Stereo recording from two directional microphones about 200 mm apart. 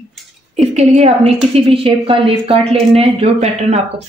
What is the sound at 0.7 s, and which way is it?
A woman's voice, 35° right (ahead or behind).